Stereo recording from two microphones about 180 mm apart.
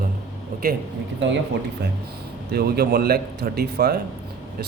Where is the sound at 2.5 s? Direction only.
60° right (ahead or behind).